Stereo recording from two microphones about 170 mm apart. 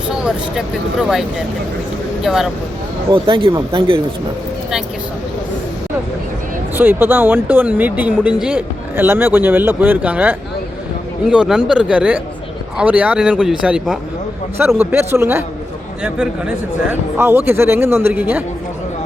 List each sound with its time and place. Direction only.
1.0 s a man's voice: 5° right (ahead or behind)
3.1 s speech: 30° right (ahead or behind)
6.7 s a man's voice: 10° right (ahead or behind)